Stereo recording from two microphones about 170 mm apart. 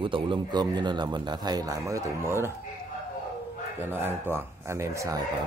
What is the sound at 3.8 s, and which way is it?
Speech, 10° right (ahead or behind).